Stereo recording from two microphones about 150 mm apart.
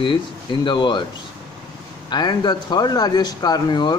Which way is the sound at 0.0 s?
35° left (ahead or behind).